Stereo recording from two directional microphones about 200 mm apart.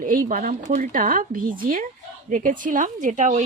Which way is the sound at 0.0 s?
45° right (ahead or behind).